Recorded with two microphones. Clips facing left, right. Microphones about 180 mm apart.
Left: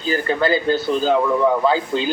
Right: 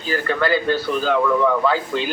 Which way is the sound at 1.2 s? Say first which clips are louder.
Left 1 dB; 20° left (ahead or behind).